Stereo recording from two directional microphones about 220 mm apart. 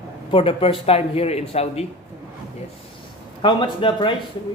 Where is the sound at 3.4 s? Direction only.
20° left (ahead or behind).